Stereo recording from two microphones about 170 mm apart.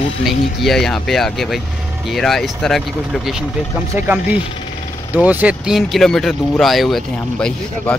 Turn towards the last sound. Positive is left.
turn(degrees=5)  # may be behind; listen again after turning